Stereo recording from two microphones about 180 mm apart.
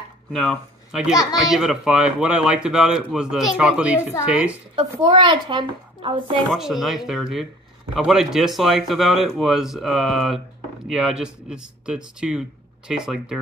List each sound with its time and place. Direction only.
0.3 s speech: centre (ahead or behind)
5.0 s a child's voice: 25° right (ahead or behind)
6.5 s speech: centre (ahead or behind)